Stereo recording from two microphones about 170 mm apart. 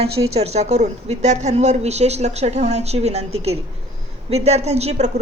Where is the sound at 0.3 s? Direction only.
40° right (ahead or behind).